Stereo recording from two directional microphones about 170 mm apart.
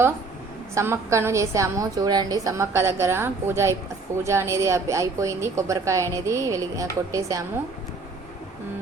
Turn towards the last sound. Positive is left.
turn(degrees=-20)  # may be behind; listen again after turning